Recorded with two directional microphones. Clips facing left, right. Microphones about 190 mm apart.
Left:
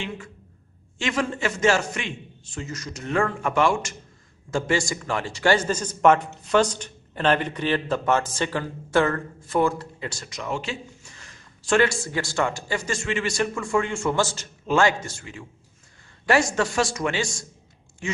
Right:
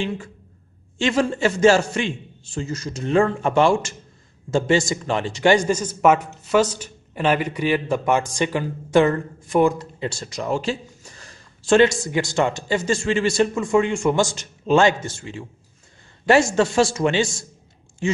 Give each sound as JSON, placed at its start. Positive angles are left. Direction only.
{"t": 0.9, "sound": "a man's voice", "side_deg": -30}